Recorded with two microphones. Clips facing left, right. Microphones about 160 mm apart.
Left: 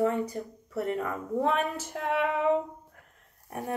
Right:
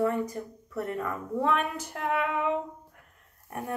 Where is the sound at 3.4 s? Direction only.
35° left (ahead or behind).